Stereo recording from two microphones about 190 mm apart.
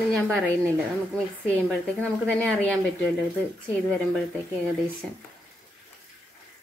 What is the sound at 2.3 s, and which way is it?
Speech, 5° left (ahead or behind).